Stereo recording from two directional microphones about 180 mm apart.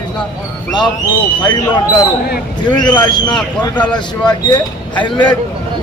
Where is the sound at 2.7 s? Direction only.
25° left (ahead or behind).